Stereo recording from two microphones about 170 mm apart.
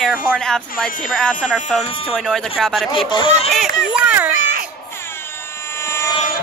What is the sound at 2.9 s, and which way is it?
Speech, 30° left (ahead or behind).